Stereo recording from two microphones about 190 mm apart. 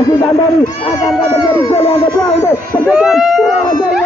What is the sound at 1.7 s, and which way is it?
Speech, 30° left (ahead or behind).